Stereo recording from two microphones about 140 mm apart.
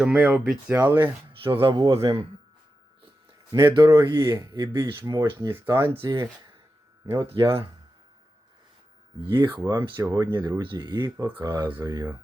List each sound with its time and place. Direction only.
0.0 s speech: 5° right (ahead or behind)
0.7 s speech: 15° right (ahead or behind)
1.6 s speech: 35° right (ahead or behind)
3.5 s speech: 20° right (ahead or behind)
4.8 s speech: 20° right (ahead or behind)
7.3 s speech: 40° right (ahead or behind)
9.3 s speech: 30° right (ahead or behind)